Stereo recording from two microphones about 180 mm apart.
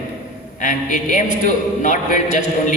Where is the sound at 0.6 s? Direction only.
45° left (ahead or behind).